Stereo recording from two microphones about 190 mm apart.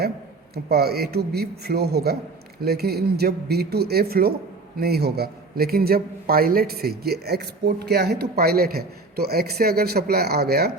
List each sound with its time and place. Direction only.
0.5 s a man's voice: 55° right (ahead or behind)